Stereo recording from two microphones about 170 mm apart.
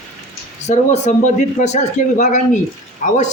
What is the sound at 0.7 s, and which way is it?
Speech, 40° left (ahead or behind).